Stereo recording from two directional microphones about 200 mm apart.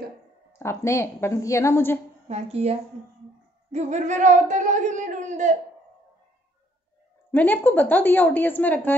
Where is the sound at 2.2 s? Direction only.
30° right (ahead or behind).